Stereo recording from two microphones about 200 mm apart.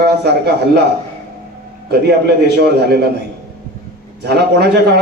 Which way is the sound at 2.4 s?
55° right (ahead or behind).